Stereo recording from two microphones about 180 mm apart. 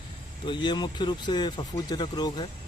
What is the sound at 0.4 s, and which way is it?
Speech, 25° left (ahead or behind).